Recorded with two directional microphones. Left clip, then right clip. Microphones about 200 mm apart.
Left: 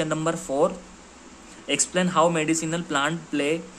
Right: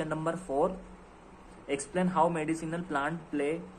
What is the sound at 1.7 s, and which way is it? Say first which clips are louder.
Speech: left 8 dB; 25° left (ahead or behind).